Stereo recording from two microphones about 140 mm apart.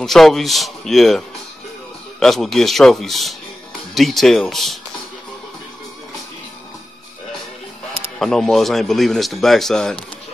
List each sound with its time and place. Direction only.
0.0 s a man's voice: centre (ahead or behind)
8.2 s a man's voice: centre (ahead or behind)